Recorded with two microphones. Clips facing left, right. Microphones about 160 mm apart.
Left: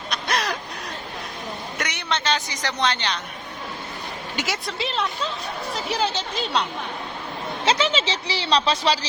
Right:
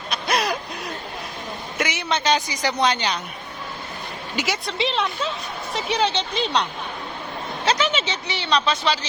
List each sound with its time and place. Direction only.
0.1 s a sound: 10° right (ahead or behind)
1.8 s a woman's voice: 5° right (ahead or behind)
4.4 s speech: centre (ahead or behind)
7.6 s speech: 25° left (ahead or behind)